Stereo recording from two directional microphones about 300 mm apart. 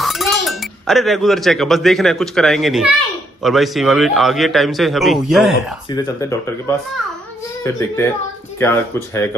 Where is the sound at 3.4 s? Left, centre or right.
Centre.